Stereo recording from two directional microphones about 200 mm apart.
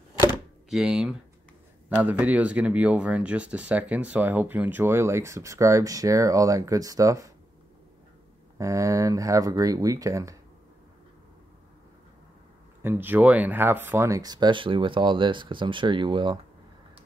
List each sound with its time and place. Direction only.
0.7 s speech: centre (ahead or behind)
8.5 s speech: 15° right (ahead or behind)
12.8 s speech: 10° right (ahead or behind)